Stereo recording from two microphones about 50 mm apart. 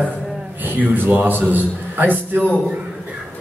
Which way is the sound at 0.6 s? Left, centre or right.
Right.